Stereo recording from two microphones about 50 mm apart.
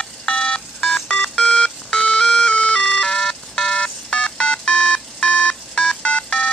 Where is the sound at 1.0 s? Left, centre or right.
Centre.